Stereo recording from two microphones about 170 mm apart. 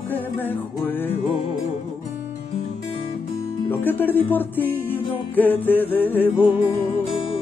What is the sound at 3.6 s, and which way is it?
Music, 10° left (ahead or behind).